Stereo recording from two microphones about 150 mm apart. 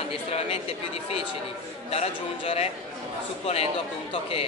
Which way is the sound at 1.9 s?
45° left (ahead or behind).